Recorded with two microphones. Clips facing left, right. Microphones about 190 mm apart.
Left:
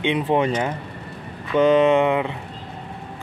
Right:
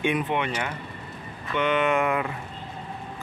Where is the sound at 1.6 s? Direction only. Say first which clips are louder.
Left 8 dB; 30° left (ahead or behind).